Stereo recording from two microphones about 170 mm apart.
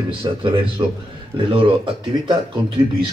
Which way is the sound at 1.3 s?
30° right (ahead or behind).